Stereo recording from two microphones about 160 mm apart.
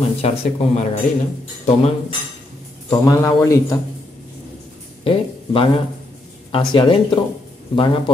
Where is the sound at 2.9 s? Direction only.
20° left (ahead or behind).